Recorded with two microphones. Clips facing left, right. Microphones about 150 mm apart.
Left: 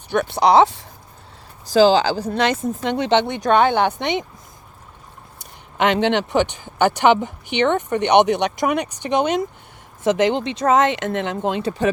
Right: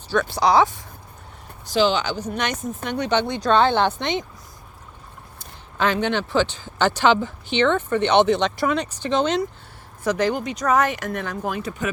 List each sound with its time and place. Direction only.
0.1 s speech: 20° left (ahead or behind)
1.6 s a sound: 40° left (ahead or behind)
2.0 s speech: 35° left (ahead or behind); by 4.1 s 15° left (ahead or behind)
5.7 s speech: 20° left (ahead or behind)